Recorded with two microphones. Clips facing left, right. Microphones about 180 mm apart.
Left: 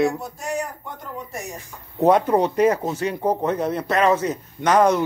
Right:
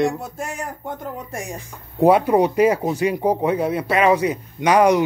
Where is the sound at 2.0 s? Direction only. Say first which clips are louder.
Right 2 dB; 10° right (ahead or behind).